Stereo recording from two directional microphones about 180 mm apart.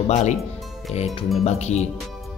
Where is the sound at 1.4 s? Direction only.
35° left (ahead or behind).